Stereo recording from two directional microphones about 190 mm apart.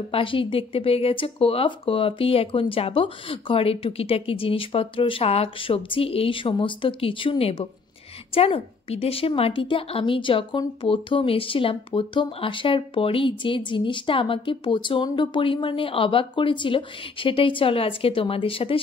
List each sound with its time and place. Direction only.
0.1 s a woman's voice: 30° left (ahead or behind)